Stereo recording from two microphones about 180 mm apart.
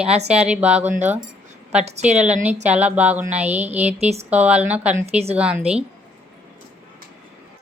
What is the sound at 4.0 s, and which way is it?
Speech, 35° right (ahead or behind).